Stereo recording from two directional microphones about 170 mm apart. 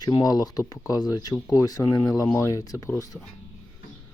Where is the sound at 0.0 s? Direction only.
20° left (ahead or behind).